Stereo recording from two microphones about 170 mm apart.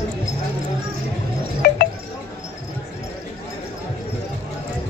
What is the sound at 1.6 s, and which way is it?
Wind chime, 70° left (ahead or behind).